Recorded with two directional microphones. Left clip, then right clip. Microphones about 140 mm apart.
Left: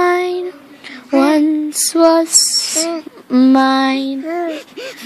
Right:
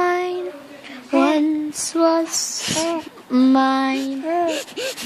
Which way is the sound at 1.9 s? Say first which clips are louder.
Left 7 dB; 30° left (ahead or behind).